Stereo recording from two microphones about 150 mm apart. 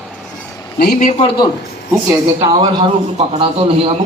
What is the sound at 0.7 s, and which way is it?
Speech, 90° left.